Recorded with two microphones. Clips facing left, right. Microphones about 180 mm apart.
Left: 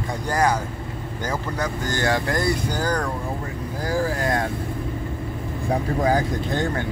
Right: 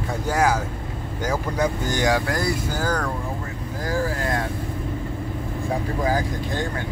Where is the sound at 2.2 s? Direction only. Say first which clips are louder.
Left 1 dB; centre (ahead or behind).